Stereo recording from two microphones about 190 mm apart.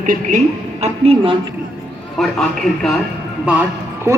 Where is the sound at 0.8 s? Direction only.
30° right (ahead or behind).